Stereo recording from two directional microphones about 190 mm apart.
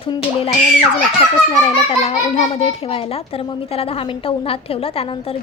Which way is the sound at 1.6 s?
30° left (ahead or behind).